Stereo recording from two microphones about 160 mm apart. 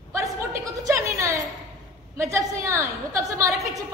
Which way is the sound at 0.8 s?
20° right (ahead or behind).